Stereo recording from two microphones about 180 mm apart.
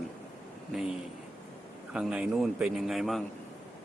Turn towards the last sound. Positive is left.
turn(degrees=0)  # may be behind; listen again after turning